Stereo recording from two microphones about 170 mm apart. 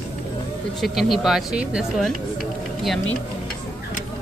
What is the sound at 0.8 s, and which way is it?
Speech, centre (ahead or behind).